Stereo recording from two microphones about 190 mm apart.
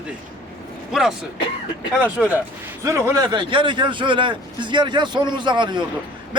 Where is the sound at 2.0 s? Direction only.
10° right (ahead or behind).